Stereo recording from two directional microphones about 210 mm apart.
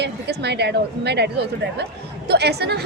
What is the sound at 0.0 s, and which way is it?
A woman's voice, 55° right (ahead or behind).